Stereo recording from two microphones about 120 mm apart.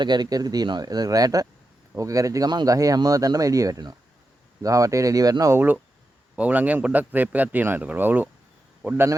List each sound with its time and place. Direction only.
0.0 s speech: 35° right (ahead or behind)
5.5 s a man's voice: 15° right (ahead or behind)